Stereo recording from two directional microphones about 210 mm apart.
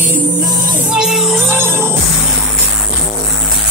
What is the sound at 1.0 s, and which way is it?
Music, centre (ahead or behind).